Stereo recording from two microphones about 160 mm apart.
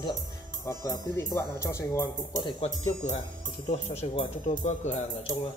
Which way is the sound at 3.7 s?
45° left (ahead or behind).